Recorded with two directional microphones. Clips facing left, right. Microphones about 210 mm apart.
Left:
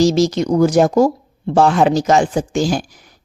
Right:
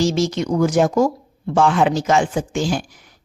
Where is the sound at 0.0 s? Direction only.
40° left (ahead or behind).